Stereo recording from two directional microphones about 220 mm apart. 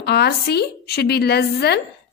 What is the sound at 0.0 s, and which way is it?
A woman's voice, 50° left (ahead or behind).